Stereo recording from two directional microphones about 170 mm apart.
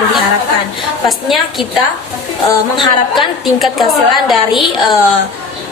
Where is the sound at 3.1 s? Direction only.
Centre (ahead or behind).